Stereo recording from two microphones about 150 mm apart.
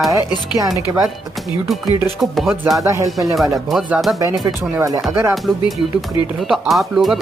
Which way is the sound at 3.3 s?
Centre (ahead or behind).